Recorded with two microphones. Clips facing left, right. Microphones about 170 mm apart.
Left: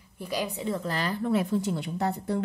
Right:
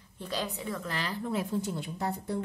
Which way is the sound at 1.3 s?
70° left (ahead or behind).